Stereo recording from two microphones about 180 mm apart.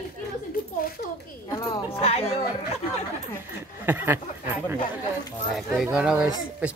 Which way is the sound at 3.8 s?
10° right (ahead or behind).